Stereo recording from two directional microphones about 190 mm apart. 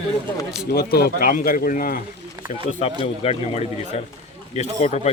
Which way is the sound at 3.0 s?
30° left (ahead or behind).